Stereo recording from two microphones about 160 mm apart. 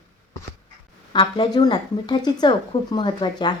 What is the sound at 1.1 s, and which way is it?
A woman's voice, 30° left (ahead or behind).